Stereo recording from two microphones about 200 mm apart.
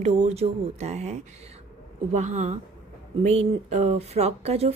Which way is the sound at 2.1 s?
35° right (ahead or behind).